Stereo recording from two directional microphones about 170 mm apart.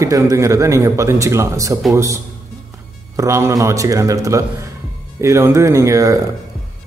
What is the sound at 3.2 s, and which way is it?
A man's voice, 15° right (ahead or behind).